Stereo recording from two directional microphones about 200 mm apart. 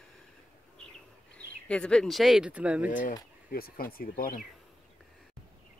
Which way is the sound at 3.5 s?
50° left (ahead or behind).